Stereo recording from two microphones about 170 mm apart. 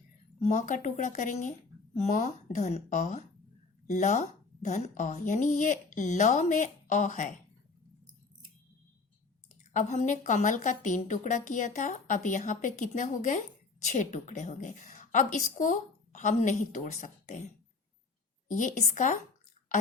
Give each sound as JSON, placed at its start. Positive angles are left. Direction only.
{"t": 0.3, "sound": "a woman's voice", "side_deg": 45}
{"t": 9.7, "sound": "a woman's voice", "side_deg": 45}
{"t": 18.4, "sound": "a woman's voice", "side_deg": 50}